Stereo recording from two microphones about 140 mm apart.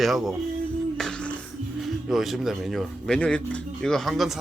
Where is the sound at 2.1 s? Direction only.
Centre (ahead or behind).